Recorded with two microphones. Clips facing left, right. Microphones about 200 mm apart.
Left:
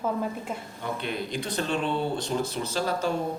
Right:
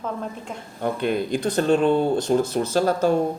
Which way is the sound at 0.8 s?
50° right (ahead or behind).